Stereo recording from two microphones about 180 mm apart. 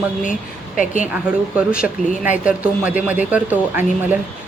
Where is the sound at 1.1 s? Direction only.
5° right (ahead or behind).